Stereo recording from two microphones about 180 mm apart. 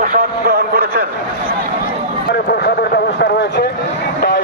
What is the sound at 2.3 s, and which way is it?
Speech, 60° left (ahead or behind).